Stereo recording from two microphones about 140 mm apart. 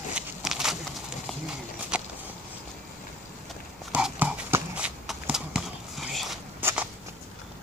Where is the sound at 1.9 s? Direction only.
5° right (ahead or behind).